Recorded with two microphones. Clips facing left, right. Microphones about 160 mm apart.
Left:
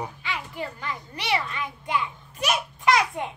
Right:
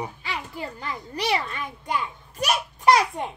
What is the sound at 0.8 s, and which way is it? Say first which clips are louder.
A child's voice: right 4 dB; 35° right (ahead or behind).